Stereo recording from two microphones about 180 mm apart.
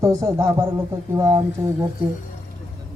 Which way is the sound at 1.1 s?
25° right (ahead or behind).